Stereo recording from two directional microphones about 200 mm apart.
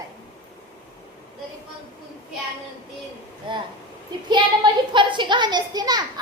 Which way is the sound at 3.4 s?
25° right (ahead or behind).